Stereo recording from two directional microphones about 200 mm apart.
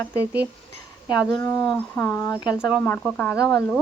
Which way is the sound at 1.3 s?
5° left (ahead or behind).